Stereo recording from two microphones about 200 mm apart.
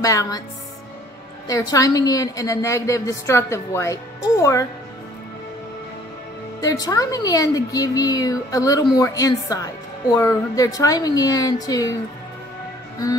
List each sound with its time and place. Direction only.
0.0 s a woman's voice: 15° left (ahead or behind)
1.5 s a woman's voice: 20° left (ahead or behind)
6.6 s a woman's voice: 20° left (ahead or behind)